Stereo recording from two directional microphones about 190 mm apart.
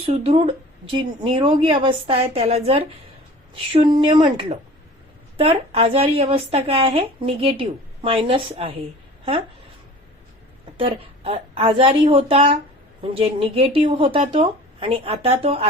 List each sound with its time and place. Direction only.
0.1 s speech: 30° right (ahead or behind)
10.8 s speech: 30° right (ahead or behind)